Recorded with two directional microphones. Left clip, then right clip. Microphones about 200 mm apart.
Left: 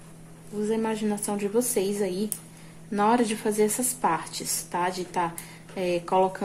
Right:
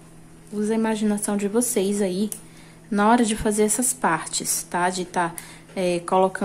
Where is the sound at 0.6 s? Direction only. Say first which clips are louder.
Right 3 dB; 25° right (ahead or behind).